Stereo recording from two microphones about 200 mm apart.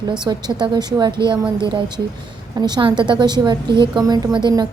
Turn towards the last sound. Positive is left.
turn(degrees=-20)  # may be behind; listen again after turning